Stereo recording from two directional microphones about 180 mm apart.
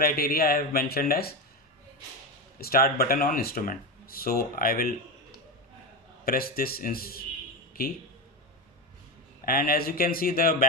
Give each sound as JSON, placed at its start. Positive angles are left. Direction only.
{"t": 0.0, "sound": "speech", "side_deg": 55}
{"t": 2.6, "sound": "speech", "side_deg": 55}
{"t": 6.2, "sound": "speech", "side_deg": 55}
{"t": 9.4, "sound": "speech", "side_deg": 55}